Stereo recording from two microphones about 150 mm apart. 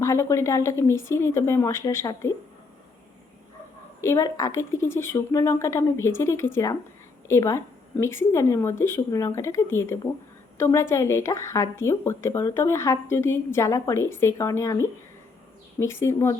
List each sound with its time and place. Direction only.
0.0 s speech: 20° left (ahead or behind)
4.0 s speech: 20° left (ahead or behind)